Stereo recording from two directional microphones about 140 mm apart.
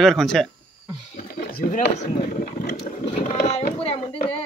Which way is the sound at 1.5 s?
80° left.